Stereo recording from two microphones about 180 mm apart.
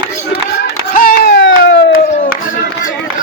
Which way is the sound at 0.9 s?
55° left (ahead or behind).